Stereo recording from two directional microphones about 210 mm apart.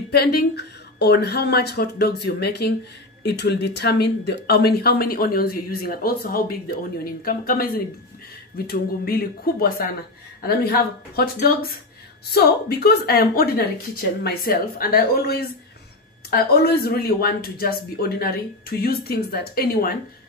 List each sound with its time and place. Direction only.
0.1 s speech: 50° left (ahead or behind)